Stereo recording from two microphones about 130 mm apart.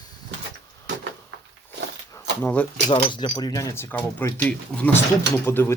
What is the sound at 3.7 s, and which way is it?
Speech, 15° left (ahead or behind).